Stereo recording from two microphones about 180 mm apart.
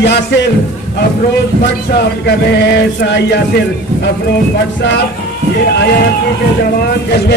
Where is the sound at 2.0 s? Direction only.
65° left (ahead or behind).